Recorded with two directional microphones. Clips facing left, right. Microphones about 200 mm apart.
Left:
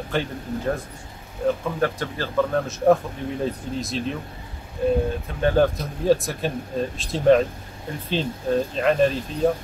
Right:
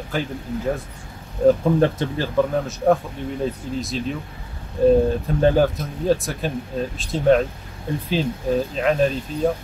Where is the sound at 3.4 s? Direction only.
Centre (ahead or behind).